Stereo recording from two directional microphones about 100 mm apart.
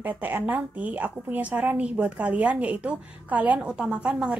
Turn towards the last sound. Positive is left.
turn(degrees=-10)  # may be behind; listen again after turning